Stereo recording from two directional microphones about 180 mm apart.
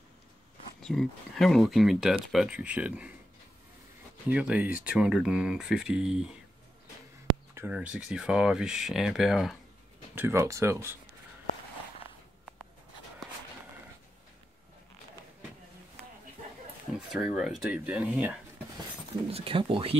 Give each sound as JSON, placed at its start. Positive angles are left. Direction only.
{"t": 0.8, "sound": "speech", "side_deg": 0}
{"t": 4.3, "sound": "speech", "side_deg": -5}
{"t": 7.5, "sound": "speech", "side_deg": -10}
{"t": 10.1, "sound": "speech", "side_deg": -15}
{"t": 17.1, "sound": "speech", "side_deg": 0}
{"t": 19.3, "sound": "speech", "side_deg": -30}